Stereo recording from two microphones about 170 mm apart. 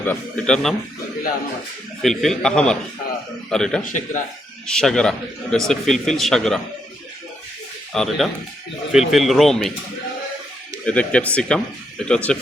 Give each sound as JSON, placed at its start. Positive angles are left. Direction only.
{"t": 0.0, "sound": "a man's voice", "side_deg": 5}
{"t": 2.0, "sound": "a man's voice", "side_deg": 0}
{"t": 3.8, "sound": "speech", "side_deg": 50}
{"t": 4.6, "sound": "a man's voice", "side_deg": 5}
{"t": 7.9, "sound": "a man's voice", "side_deg": 0}
{"t": 10.8, "sound": "a man's voice", "side_deg": 5}